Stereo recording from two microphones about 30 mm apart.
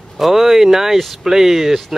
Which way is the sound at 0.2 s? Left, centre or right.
Centre.